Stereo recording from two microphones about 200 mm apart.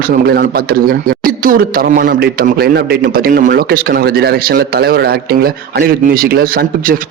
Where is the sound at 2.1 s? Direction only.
50° right (ahead or behind).